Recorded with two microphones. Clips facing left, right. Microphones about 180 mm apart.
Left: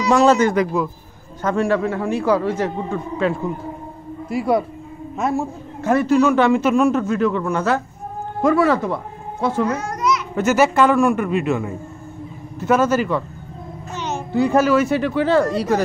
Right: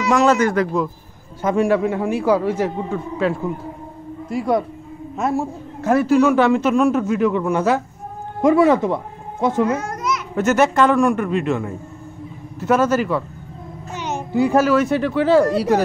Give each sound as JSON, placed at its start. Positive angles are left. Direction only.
{"t": 0.0, "sound": "speech", "side_deg": 30}
{"t": 1.4, "sound": "a man's voice", "side_deg": -10}
{"t": 9.8, "sound": "children playing", "side_deg": -50}
{"t": 10.3, "sound": "a man's voice", "side_deg": 5}
{"t": 13.9, "sound": "a child's voice", "side_deg": -10}